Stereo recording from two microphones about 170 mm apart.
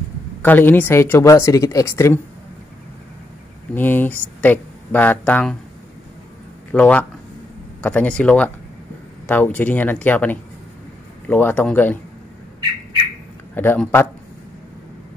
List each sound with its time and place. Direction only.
0.4 s speech: 10° left (ahead or behind)
3.7 s speech: 10° left (ahead or behind)
6.7 s speech: 10° left (ahead or behind)
13.6 s speech: 10° left (ahead or behind)